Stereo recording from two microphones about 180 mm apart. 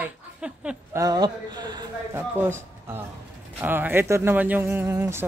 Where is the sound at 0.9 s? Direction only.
20° right (ahead or behind).